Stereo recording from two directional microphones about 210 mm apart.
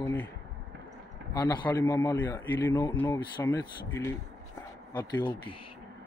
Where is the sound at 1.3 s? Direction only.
20° left (ahead or behind).